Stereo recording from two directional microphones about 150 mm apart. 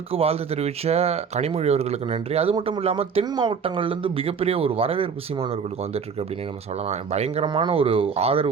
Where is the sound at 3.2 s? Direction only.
30° right (ahead or behind); by 7.4 s 45° right (ahead or behind).